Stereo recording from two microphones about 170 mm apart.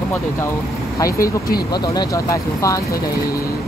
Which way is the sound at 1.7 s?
25° left (ahead or behind).